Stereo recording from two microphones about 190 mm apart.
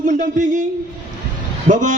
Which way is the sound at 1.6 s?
45° right (ahead or behind).